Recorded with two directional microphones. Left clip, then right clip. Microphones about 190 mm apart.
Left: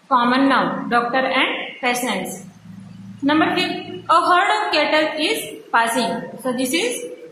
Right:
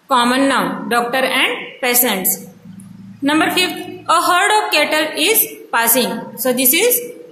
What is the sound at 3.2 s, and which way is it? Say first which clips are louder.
A woman's voice: right 3 dB; 55° right (ahead or behind).